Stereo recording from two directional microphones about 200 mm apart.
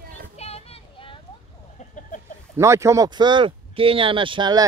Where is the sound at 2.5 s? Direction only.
15° right (ahead or behind).